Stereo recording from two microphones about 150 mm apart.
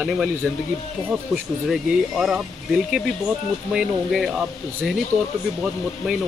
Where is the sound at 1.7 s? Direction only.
5° right (ahead or behind).